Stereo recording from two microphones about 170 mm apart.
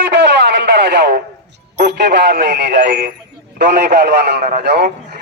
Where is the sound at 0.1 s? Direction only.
85° right.